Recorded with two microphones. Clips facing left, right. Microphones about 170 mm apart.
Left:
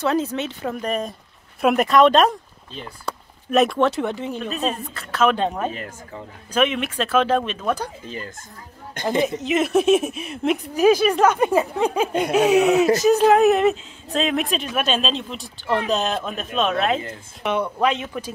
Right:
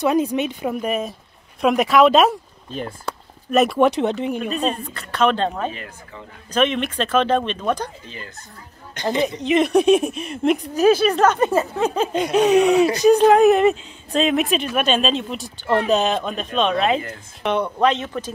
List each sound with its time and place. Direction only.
0.0 s speech: 15° right (ahead or behind)
2.7 s speech: 45° right (ahead or behind)
3.1 s a sound: centre (ahead or behind)
3.8 s speech: 20° right (ahead or behind)
4.5 s speech: centre (ahead or behind)
5.7 s speech: 40° left (ahead or behind)
6.5 s a woman's voice: 10° left (ahead or behind)
9.4 s a woman's voice: 5° left (ahead or behind)